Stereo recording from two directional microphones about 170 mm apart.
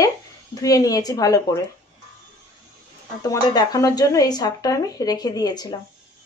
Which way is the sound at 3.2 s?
20° left (ahead or behind).